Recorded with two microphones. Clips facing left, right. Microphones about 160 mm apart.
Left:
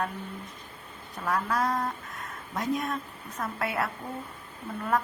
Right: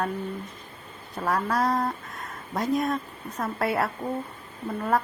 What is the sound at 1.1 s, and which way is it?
Speech, 35° right (ahead or behind).